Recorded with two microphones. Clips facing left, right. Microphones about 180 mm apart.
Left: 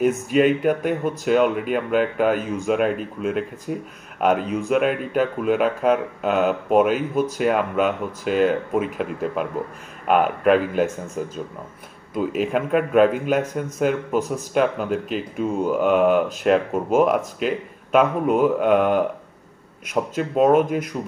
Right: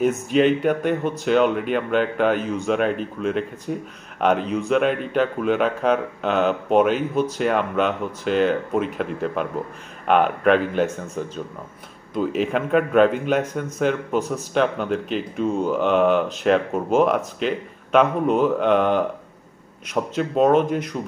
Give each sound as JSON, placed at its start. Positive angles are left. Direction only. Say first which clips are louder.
{"t": 0.0, "sound": "a man's voice", "louder": "even", "side_deg": 5}